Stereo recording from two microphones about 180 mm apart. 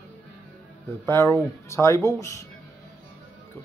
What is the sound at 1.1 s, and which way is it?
Speech, 15° left (ahead or behind).